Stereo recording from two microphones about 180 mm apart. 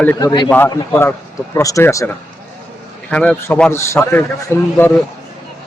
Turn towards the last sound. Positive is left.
turn(degrees=10)  # may be behind; listen again after turning